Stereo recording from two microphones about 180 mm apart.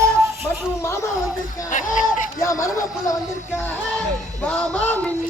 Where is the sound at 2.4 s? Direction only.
20° left (ahead or behind).